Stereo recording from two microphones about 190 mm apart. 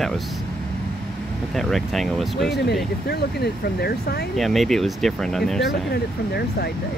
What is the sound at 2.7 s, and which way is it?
Speech, 60° left (ahead or behind).